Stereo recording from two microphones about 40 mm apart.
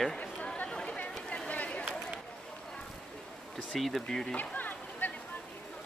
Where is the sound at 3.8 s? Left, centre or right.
Centre.